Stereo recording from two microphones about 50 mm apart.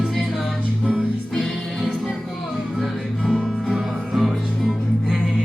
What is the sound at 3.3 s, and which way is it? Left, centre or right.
Music, centre.